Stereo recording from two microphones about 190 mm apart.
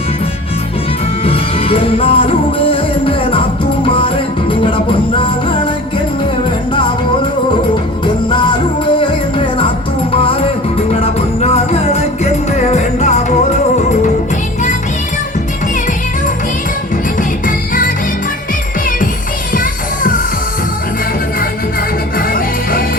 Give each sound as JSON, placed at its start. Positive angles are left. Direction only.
{"t": 1.2, "sound": "music", "side_deg": 30}
{"t": 8.0, "sound": "music", "side_deg": 25}
{"t": 17.2, "sound": "music", "side_deg": 45}
{"t": 19.5, "sound": "music", "side_deg": 45}
{"t": 22.2, "sound": "music", "side_deg": 50}